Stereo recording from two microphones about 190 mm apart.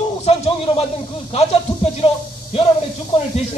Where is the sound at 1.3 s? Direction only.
30° left (ahead or behind).